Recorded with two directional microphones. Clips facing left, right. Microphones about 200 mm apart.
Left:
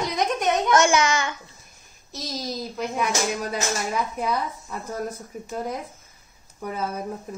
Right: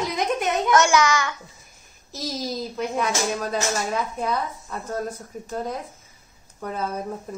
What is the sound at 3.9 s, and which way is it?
Speech, 10° left (ahead or behind).